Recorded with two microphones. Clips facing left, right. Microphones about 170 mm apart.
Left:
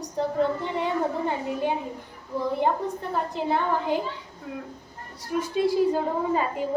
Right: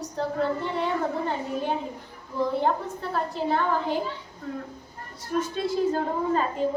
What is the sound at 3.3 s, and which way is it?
Speech, 15° left (ahead or behind).